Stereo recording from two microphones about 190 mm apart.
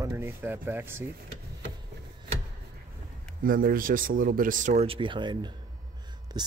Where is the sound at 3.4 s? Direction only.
50° right (ahead or behind).